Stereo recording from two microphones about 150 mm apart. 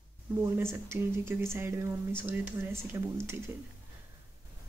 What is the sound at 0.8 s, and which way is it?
Speech, 15° right (ahead or behind).